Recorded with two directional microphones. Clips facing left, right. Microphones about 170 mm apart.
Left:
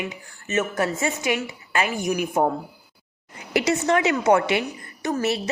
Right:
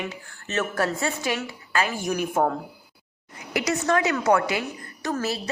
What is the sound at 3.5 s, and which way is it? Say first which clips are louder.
A woman's voice: left 3 dB; 25° left (ahead or behind).